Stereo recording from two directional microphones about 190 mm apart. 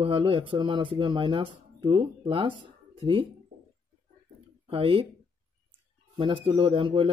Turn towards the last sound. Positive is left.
turn(degrees=-30)  # may be behind; listen again after turning